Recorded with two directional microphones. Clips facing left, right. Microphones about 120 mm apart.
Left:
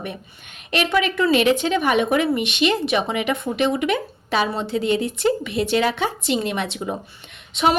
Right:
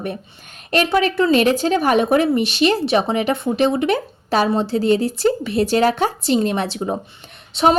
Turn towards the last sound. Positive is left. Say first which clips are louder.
# right 4 dB
turn(degrees=-35)  # may be behind; listen again after turning